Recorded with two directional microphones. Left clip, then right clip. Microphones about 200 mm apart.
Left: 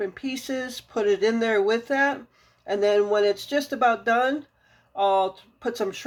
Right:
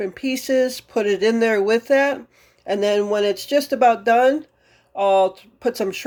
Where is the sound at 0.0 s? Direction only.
40° right (ahead or behind).